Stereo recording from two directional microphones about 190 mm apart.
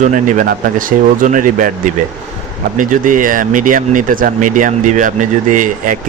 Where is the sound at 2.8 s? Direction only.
45° right (ahead or behind).